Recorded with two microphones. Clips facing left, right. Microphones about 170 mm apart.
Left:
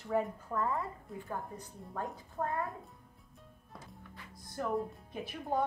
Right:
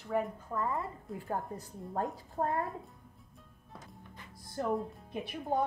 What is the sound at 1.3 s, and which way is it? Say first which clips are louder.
A woman's voice: right 5 dB; 40° right (ahead or behind).